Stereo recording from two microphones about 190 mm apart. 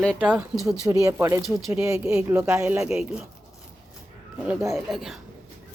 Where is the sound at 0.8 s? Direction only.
15° right (ahead or behind).